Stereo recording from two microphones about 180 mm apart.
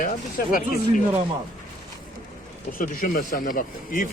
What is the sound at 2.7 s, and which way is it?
A man's voice, 50° left (ahead or behind).